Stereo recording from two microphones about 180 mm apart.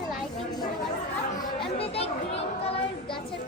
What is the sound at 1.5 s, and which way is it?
Children playing, 30° left (ahead or behind).